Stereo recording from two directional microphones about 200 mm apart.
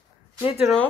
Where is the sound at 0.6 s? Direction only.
5° left (ahead or behind).